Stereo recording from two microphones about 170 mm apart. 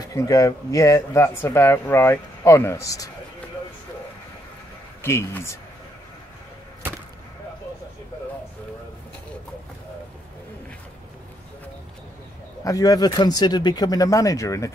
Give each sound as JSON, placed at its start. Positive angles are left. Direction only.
{"t": 0.1, "sound": "speech", "side_deg": 20}
{"t": 5.0, "sound": "speech", "side_deg": 15}
{"t": 12.6, "sound": "speech", "side_deg": 20}